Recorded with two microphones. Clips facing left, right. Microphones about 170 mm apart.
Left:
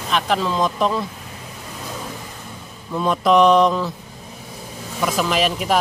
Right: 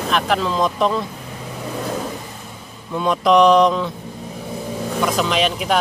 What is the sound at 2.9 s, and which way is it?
Speech, centre (ahead or behind).